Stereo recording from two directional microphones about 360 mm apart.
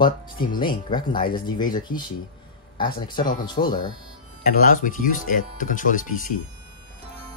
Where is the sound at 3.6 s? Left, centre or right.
Centre.